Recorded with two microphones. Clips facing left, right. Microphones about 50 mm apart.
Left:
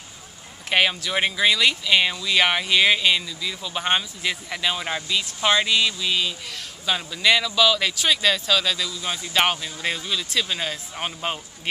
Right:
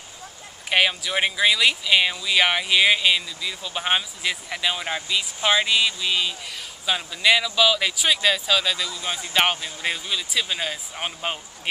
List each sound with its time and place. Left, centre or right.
0.7 s speech: centre